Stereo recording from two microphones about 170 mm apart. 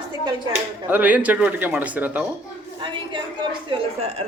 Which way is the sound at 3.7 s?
35° right (ahead or behind).